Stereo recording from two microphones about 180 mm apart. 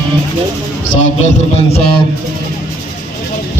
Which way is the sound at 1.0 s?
35° left (ahead or behind).